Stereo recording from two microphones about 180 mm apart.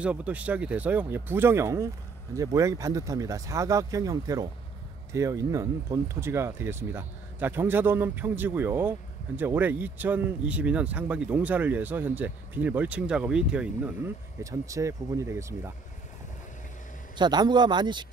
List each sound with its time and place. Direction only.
0.0 s speech: 5° right (ahead or behind)
17.2 s speech: 25° right (ahead or behind)